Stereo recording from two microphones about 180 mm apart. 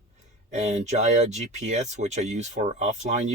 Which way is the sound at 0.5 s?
40° right (ahead or behind).